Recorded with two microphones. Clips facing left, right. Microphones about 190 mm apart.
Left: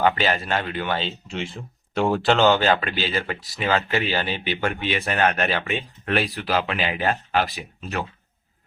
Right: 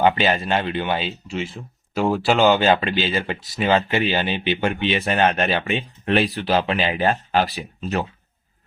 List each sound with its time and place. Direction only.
0.0 s speech: 20° right (ahead or behind)